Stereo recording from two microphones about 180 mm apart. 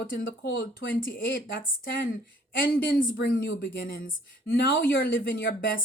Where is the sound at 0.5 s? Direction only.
90° left.